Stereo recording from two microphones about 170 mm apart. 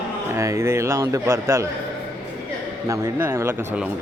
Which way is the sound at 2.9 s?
15° right (ahead or behind).